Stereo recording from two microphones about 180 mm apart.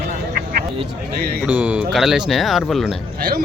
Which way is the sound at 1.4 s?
10° right (ahead or behind).